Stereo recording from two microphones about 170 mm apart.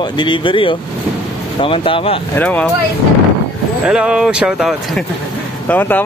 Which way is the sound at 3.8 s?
5° right (ahead or behind).